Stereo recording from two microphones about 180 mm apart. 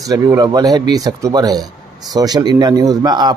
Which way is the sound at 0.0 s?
20° right (ahead or behind).